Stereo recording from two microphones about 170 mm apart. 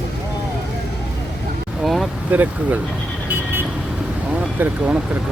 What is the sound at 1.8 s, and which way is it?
Vehicle, centre (ahead or behind).